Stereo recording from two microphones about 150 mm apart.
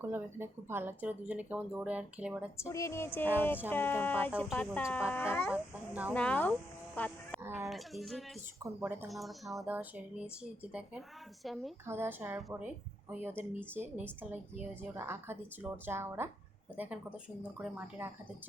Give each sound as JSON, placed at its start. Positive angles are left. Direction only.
{"t": 0.0, "sound": "speech", "side_deg": -15}
{"t": 2.6, "sound": "speech", "side_deg": 20}
{"t": 5.9, "sound": "speech", "side_deg": -10}
{"t": 6.1, "sound": "speech", "side_deg": 10}
{"t": 7.5, "sound": "speech", "side_deg": 0}
{"t": 8.6, "sound": "speech", "side_deg": -15}
{"t": 9.0, "sound": "speech", "side_deg": 0}
{"t": 9.6, "sound": "speech", "side_deg": -10}
{"t": 11.9, "sound": "speech", "side_deg": -15}